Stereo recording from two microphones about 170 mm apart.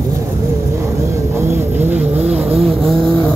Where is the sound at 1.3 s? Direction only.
15° right (ahead or behind).